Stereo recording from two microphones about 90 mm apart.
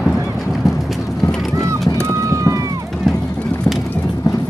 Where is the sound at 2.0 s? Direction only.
35° right (ahead or behind).